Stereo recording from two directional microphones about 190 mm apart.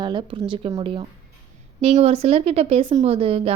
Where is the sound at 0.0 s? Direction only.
25° right (ahead or behind).